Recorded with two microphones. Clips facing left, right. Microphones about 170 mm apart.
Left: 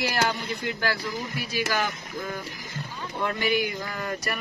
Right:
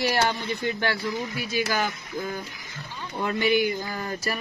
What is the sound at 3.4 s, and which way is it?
Speech, 30° right (ahead or behind).